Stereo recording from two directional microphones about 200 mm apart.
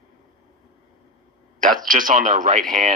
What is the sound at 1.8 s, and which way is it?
Speech, 45° right (ahead or behind).